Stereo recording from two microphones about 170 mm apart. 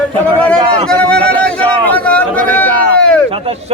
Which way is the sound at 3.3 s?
35° right (ahead or behind).